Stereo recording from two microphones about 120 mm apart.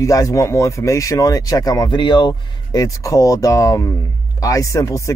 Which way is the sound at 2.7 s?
25° left (ahead or behind).